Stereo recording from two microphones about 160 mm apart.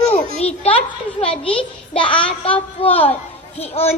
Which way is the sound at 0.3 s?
40° left (ahead or behind).